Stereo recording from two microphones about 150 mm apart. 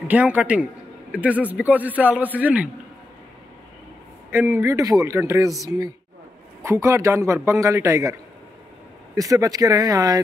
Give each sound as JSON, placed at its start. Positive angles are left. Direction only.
{"t": 0.1, "sound": "a man's voice", "side_deg": -10}
{"t": 4.3, "sound": "a man's voice", "side_deg": -15}
{"t": 6.6, "sound": "speech", "side_deg": -20}